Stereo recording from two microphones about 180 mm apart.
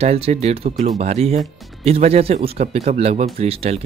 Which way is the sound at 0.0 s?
35° right (ahead or behind).